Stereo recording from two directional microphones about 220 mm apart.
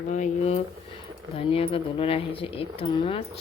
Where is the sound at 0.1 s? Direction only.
30° left (ahead or behind).